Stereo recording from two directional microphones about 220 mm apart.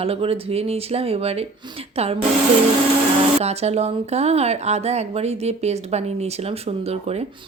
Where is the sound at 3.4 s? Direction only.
30° right (ahead or behind).